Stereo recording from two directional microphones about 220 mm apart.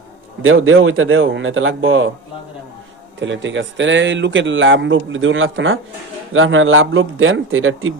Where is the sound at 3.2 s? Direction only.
55° right (ahead or behind).